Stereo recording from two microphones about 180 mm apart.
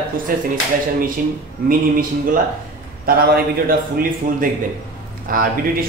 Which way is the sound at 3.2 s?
55° right (ahead or behind).